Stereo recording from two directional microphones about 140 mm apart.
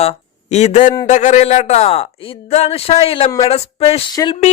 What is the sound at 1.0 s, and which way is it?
Speech, 60° left (ahead or behind).